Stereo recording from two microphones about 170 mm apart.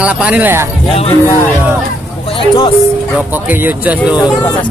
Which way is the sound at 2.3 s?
30° left (ahead or behind).